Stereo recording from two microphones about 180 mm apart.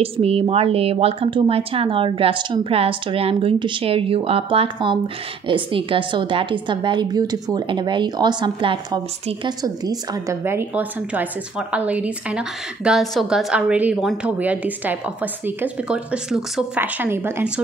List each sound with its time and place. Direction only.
0.0 s a woman's voice: 35° right (ahead or behind); by 17.5 s 10° right (ahead or behind)